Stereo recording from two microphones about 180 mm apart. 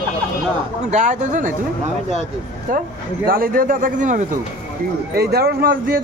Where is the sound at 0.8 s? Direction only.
45° right (ahead or behind).